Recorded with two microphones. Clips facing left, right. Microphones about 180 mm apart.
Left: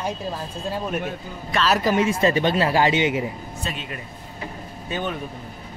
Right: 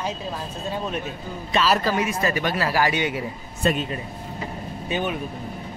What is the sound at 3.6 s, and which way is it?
Speech, 60° right (ahead or behind).